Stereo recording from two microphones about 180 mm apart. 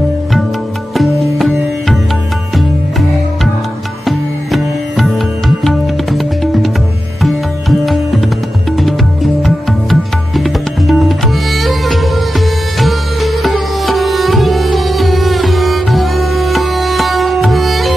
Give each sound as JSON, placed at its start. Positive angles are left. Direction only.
{"t": 0.9, "sound": "music", "side_deg": 0}
{"t": 4.0, "sound": "music", "side_deg": 0}
{"t": 7.8, "sound": "tabla", "side_deg": 0}
{"t": 8.7, "sound": "music", "side_deg": 0}